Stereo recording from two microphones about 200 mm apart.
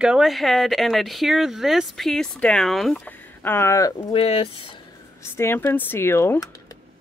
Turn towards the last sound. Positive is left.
turn(degrees=15)  # may be behind; listen again after turning